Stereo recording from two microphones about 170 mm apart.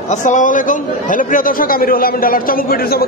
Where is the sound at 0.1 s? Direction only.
45° left (ahead or behind).